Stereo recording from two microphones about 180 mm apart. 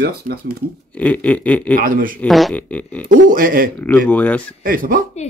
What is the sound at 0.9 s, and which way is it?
Speech, 10° left (ahead or behind).